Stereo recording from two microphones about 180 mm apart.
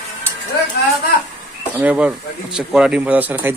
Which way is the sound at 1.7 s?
10° right (ahead or behind).